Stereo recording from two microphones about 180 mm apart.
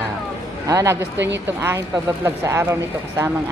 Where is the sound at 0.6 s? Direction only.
20° right (ahead or behind).